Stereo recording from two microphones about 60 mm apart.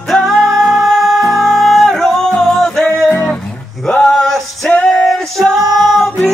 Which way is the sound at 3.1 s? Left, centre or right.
Left.